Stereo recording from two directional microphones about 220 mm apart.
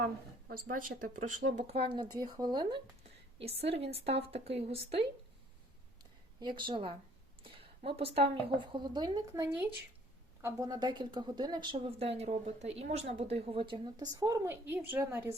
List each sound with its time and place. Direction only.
0.7 s speech: 40° right (ahead or behind)
6.4 s speech: 20° right (ahead or behind)
7.4 s a sound: 25° right (ahead or behind)
8.4 s a woman's voice: 20° right (ahead or behind)